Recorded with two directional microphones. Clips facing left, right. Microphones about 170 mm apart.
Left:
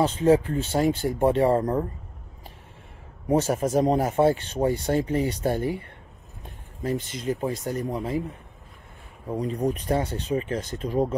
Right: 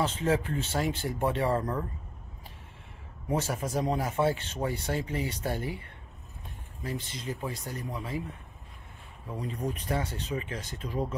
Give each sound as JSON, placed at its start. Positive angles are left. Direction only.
{"t": 0.0, "sound": "speech", "side_deg": 40}
{"t": 3.3, "sound": "speech", "side_deg": 45}
{"t": 6.8, "sound": "speech", "side_deg": 40}
{"t": 9.3, "sound": "speech", "side_deg": 40}